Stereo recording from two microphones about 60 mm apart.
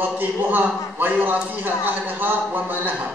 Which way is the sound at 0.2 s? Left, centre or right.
Right.